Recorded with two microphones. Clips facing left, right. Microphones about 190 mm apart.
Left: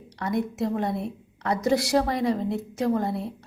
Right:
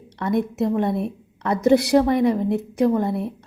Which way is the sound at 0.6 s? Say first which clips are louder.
Right 5 dB; 25° right (ahead or behind).